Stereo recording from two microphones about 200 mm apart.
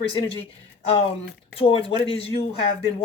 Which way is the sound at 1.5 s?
25° left (ahead or behind).